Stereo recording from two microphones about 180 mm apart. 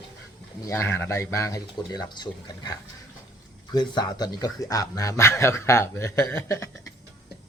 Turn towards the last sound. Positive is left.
turn(degrees=15)  # may be behind; listen again after turning